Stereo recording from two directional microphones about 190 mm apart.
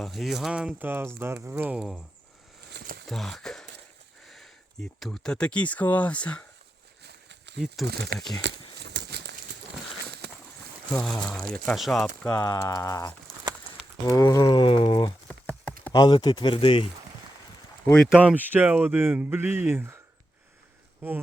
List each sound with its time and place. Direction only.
0.0 s speech: centre (ahead or behind)
2.7 s a sound: 50° right (ahead or behind)
3.1 s speech: centre (ahead or behind)
7.0 s a sound: 60° right (ahead or behind)
8.4 s horse: 65° right (ahead or behind)
10.1 s a sound: 60° right (ahead or behind)
10.9 s speech: 5° left (ahead or behind)
12.2 s speech: 15° left (ahead or behind)
15.3 s clip-clop: 5° left (ahead or behind)
15.9 s speech: 20° left (ahead or behind)
17.8 s speech: 5° left (ahead or behind)
18.2 s speech: 10° right (ahead or behind)